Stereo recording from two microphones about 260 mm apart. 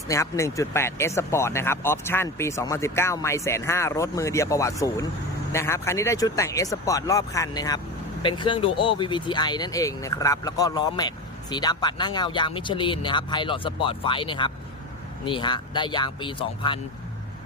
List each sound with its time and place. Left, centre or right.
0.1 s speech: centre